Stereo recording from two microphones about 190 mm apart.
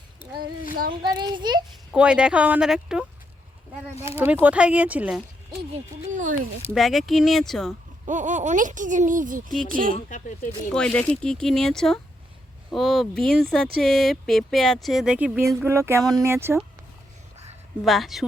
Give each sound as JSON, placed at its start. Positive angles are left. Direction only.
{"t": 1.0, "sound": "a child's voice", "side_deg": -25}
{"t": 1.9, "sound": "speech", "side_deg": -5}
{"t": 4.1, "sound": "speech", "side_deg": -10}
{"t": 5.7, "sound": "speech", "side_deg": -40}
{"t": 6.7, "sound": "speech", "side_deg": 0}
{"t": 8.0, "sound": "speech", "side_deg": -40}
{"t": 10.1, "sound": "speech", "side_deg": 40}
{"t": 10.7, "sound": "speech", "side_deg": 5}
{"t": 17.8, "sound": "speech", "side_deg": 0}